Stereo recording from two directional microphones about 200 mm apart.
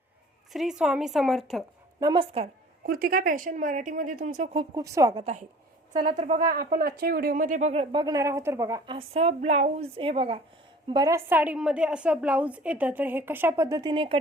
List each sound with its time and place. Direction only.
0.5 s a woman's voice: centre (ahead or behind)
2.0 s a woman's voice: 20° right (ahead or behind)
2.8 s speech: 45° right (ahead or behind)
4.5 s a woman's voice: 15° right (ahead or behind)
5.2 s speech: 35° right (ahead or behind); by 9.0 s 15° right (ahead or behind)
9.0 s a woman's voice: 30° right (ahead or behind)